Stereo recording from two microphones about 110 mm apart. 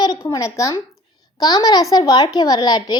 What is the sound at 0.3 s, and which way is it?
A woman's voice, 25° left (ahead or behind).